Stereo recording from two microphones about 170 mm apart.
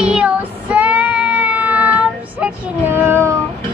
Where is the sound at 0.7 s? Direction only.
10° right (ahead or behind).